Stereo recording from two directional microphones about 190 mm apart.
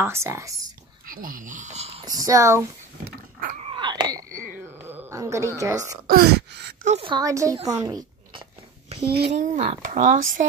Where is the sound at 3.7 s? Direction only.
20° right (ahead or behind).